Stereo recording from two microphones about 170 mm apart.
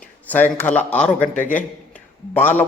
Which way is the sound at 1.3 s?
50° left (ahead or behind).